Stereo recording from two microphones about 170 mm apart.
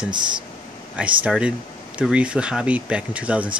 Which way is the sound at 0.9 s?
5° right (ahead or behind).